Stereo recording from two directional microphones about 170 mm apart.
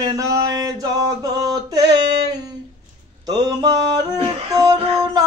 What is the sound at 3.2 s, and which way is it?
Music, 25° right (ahead or behind).